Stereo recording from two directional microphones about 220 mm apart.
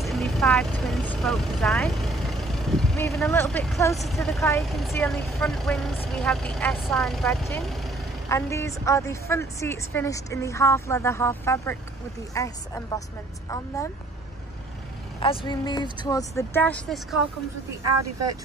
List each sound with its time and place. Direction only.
0.0 s vehicle: centre (ahead or behind)
3.3 s speech: 10° left (ahead or behind)
4.4 s a woman's voice: 10° left (ahead or behind)
4.6 s speech: centre (ahead or behind)
8.3 s a woman's voice: 15° left (ahead or behind)
15.1 s a woman's voice: 20° left (ahead or behind); by 17.2 s 5° left (ahead or behind)